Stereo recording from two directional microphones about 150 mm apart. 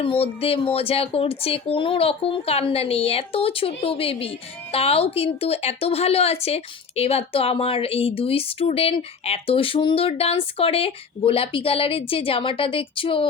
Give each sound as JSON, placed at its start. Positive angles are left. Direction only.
{"t": 0.0, "sound": "speech", "side_deg": 40}